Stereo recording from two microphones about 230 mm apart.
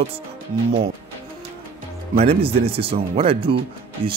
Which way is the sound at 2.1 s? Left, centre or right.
Right.